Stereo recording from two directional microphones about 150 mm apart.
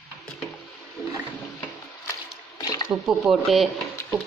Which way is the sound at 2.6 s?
25° left (ahead or behind).